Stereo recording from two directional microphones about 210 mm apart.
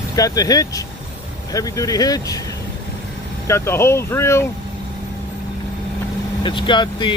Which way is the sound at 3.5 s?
10° left (ahead or behind).